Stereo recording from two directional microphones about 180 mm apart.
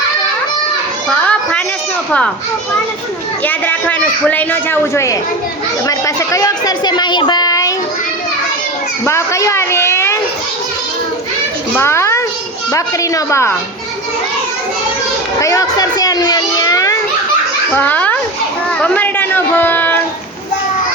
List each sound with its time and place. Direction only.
1.1 s children playing: 5° left (ahead or behind)
2.0 s a child's voice: 5° left (ahead or behind)
3.4 s a man's voice: 10° left (ahead or behind)
9.0 s a man's voice: 15° left (ahead or behind)
11.7 s a man's voice: 15° left (ahead or behind)
15.4 s a child's voice: 15° left (ahead or behind)